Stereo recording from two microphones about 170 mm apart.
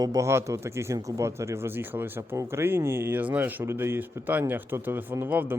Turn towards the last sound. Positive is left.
turn(degrees=-10)  # may be behind; listen again after turning